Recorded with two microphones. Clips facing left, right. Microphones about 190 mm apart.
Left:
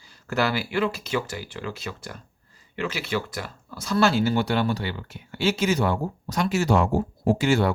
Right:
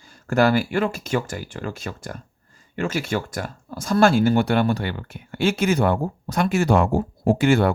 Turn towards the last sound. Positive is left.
turn(degrees=-55)  # may be behind; listen again after turning